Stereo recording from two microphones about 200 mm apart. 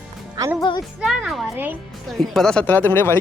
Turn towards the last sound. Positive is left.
turn(degrees=10)  # may be behind; listen again after turning